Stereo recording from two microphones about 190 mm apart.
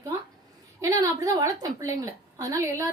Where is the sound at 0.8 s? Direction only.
20° right (ahead or behind).